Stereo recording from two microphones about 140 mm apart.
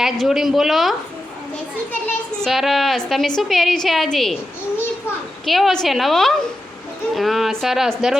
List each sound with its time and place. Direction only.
0.0 s a woman's voice: 5° right (ahead or behind)
1.9 s a child's voice: 15° left (ahead or behind)
2.5 s a woman's voice: centre (ahead or behind)
5.5 s a woman's voice: centre (ahead or behind)